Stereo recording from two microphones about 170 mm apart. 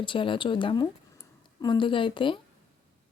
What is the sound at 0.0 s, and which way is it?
Speech, 30° left (ahead or behind).